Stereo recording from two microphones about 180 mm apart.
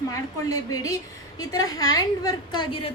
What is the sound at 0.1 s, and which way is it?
A woman's voice, 20° left (ahead or behind).